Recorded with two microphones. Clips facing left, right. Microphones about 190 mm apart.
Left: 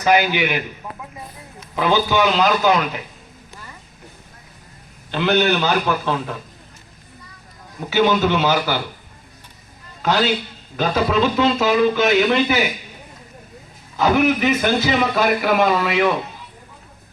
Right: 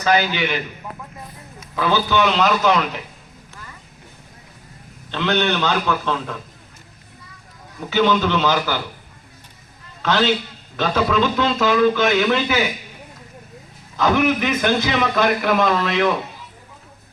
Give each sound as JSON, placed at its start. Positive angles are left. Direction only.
{"t": 0.0, "sound": "a man's voice", "side_deg": 15}
{"t": 1.7, "sound": "a man's voice", "side_deg": 15}
{"t": 2.4, "sound": "a man's voice", "side_deg": 5}
{"t": 5.1, "sound": "a man's voice", "side_deg": 10}
{"t": 7.9, "sound": "a man's voice", "side_deg": 10}
{"t": 10.0, "sound": "a man's voice", "side_deg": 10}
{"t": 13.9, "sound": "a man's voice", "side_deg": 10}